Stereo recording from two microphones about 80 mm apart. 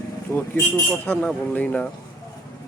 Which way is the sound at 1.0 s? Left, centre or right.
Left.